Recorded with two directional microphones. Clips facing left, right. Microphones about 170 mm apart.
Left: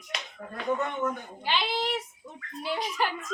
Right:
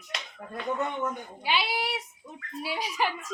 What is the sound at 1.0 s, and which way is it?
A child's voice, 10° right (ahead or behind).